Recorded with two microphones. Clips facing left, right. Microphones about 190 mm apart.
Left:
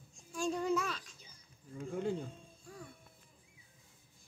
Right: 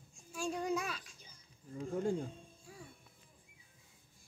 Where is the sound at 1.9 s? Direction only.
40° right (ahead or behind).